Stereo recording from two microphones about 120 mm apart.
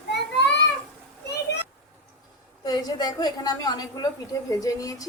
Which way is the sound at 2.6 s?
35° left (ahead or behind).